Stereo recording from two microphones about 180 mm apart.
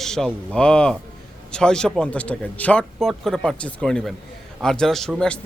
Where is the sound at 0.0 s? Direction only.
Centre (ahead or behind).